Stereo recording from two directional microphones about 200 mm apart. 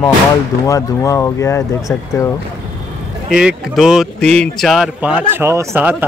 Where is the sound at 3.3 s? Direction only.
5° right (ahead or behind).